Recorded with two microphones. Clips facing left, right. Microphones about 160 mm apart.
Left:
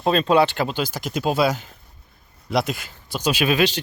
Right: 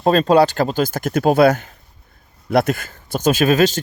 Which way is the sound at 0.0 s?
40° right (ahead or behind).